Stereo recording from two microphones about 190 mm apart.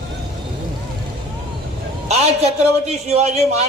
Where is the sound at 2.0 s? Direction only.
35° right (ahead or behind).